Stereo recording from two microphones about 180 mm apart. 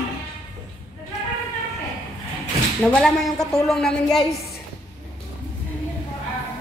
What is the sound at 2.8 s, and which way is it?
A woman's voice, centre (ahead or behind).